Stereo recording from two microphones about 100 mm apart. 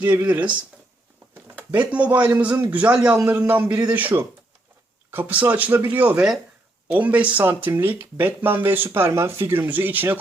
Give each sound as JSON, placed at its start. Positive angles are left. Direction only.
{"t": 0.0, "sound": "a man's voice", "side_deg": -15}
{"t": 1.7, "sound": "a man's voice", "side_deg": -15}